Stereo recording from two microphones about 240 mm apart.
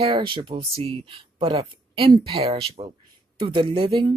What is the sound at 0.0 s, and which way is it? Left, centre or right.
Speech, right.